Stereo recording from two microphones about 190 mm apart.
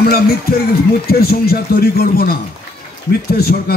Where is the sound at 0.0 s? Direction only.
55° left (ahead or behind).